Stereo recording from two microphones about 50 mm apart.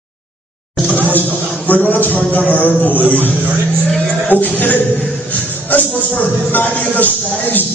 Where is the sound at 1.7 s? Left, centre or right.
Left.